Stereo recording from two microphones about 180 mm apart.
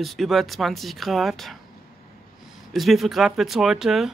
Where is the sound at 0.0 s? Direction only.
Centre (ahead or behind).